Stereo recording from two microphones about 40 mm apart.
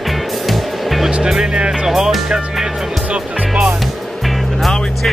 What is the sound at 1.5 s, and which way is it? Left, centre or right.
Music, right.